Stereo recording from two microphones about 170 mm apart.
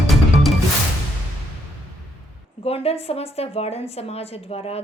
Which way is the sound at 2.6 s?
35° left (ahead or behind).